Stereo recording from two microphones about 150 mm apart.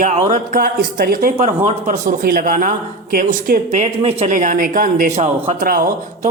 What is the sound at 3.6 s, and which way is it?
Mantra, 45° right (ahead or behind).